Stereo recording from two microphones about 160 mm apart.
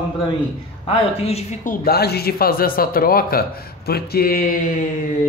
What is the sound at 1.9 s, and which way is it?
A man's voice, 80° left.